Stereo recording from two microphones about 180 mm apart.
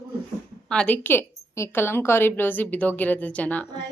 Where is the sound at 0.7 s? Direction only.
5° left (ahead or behind).